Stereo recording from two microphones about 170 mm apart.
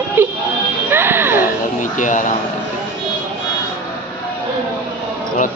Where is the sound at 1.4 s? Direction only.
50° left (ahead or behind).